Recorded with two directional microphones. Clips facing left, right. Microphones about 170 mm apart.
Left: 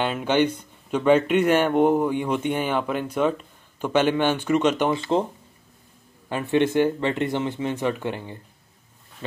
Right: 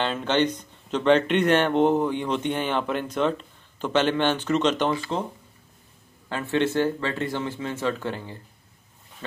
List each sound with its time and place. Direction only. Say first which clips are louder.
0.0 s speech: left 2 dB; 10° left (ahead or behind)
4.9 s speech: left 6 dB; 25° left (ahead or behind)
6.2 s speech: left 3 dB; 15° left (ahead or behind)